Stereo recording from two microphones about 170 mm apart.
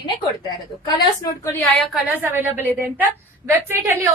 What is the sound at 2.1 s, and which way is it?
Speech, 10° right (ahead or behind).